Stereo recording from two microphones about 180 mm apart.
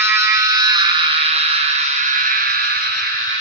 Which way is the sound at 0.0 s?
15° right (ahead or behind).